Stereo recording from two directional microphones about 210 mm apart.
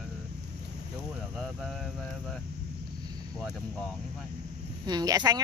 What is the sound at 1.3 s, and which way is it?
Speech, centre (ahead or behind).